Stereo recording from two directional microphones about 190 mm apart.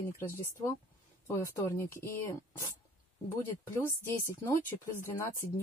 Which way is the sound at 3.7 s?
15° left (ahead or behind).